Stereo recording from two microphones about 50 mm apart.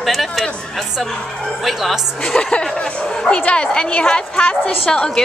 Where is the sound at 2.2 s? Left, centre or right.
Centre.